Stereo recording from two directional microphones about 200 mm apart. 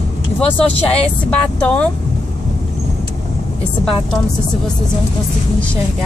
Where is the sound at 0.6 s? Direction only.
5° left (ahead or behind).